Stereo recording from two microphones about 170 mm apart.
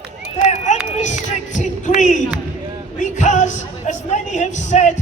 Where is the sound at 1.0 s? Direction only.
45° left (ahead or behind).